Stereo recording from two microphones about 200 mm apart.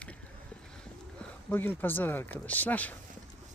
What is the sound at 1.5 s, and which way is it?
Speech, 10° left (ahead or behind).